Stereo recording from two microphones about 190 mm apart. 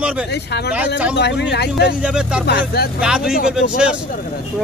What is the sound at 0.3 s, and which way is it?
Speech, 60° left (ahead or behind).